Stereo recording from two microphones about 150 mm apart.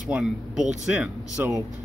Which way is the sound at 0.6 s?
55° right (ahead or behind).